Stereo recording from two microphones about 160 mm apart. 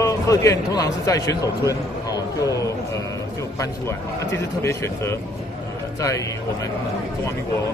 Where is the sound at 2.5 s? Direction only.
20° left (ahead or behind).